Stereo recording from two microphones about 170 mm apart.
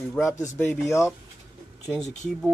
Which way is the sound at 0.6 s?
15° left (ahead or behind).